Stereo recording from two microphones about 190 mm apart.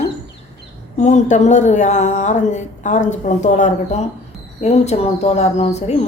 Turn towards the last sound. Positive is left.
turn(degrees=35)  # may be behind; listen again after turning